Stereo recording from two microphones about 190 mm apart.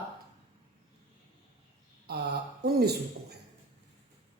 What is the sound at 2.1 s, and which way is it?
Speech, 55° right (ahead or behind).